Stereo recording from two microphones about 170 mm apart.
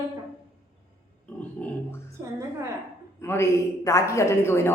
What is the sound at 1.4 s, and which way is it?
Grunt, 10° left (ahead or behind).